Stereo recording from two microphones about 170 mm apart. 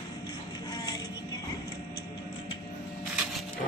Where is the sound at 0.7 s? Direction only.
20° left (ahead or behind).